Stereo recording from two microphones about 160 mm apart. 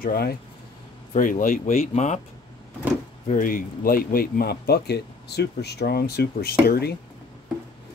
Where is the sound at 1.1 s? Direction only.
55° left (ahead or behind).